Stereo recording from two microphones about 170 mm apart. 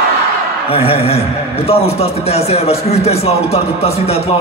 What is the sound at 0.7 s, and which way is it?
A man's voice, 35° left (ahead or behind).